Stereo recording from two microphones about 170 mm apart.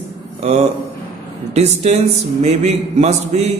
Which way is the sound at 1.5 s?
40° right (ahead or behind).